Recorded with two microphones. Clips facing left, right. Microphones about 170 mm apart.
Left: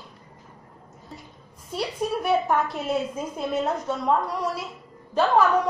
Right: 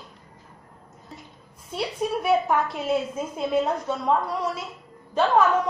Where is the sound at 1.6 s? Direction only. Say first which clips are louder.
Even; centre (ahead or behind).